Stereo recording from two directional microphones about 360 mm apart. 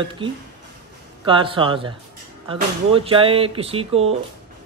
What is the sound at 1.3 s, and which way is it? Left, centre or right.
A man's voice, centre.